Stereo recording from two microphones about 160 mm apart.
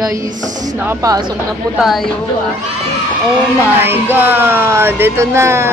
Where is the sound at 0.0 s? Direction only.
20° right (ahead or behind).